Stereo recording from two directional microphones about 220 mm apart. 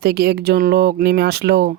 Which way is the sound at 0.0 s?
45° right (ahead or behind).